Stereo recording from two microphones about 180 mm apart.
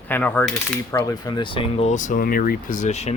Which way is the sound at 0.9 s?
20° left (ahead or behind).